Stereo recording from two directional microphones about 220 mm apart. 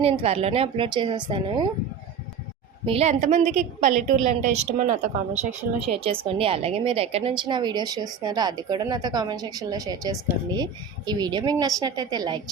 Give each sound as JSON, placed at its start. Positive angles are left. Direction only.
{"t": 0.0, "sound": "a woman's voice", "side_deg": -25}
{"t": 2.8, "sound": "a woman's voice", "side_deg": -25}